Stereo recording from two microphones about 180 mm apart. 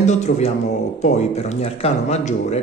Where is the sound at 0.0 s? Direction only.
40° left (ahead or behind).